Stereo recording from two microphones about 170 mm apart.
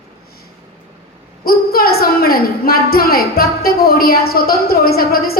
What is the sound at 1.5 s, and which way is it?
A woman's voice, 60° left (ahead or behind).